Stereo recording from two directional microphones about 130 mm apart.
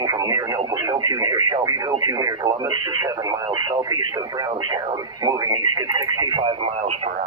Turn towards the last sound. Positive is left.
turn(degrees=-40)  # may be behind; listen again after turning